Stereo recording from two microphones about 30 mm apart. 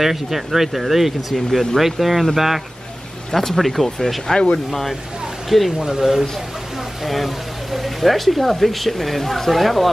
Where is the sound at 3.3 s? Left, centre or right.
Centre.